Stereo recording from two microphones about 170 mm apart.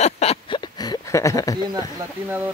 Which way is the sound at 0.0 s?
40° left (ahead or behind).